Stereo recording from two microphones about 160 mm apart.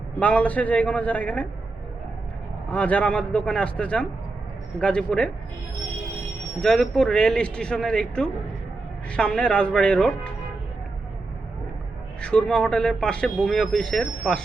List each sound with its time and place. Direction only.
0.2 s a man's voice: 10° left (ahead or behind)
2.7 s a man's voice: 10° left (ahead or behind)
6.6 s a man's voice: 5° left (ahead or behind)
12.2 s a man's voice: 5° left (ahead or behind)